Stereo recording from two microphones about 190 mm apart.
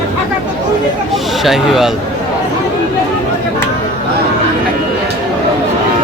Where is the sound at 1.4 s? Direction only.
Centre (ahead or behind).